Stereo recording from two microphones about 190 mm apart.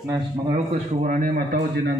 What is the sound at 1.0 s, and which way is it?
Speech, 50° right (ahead or behind).